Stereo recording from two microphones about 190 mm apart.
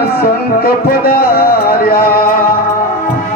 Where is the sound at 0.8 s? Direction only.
50° left (ahead or behind).